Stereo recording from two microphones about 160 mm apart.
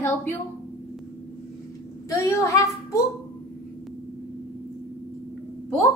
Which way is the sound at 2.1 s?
20° left (ahead or behind).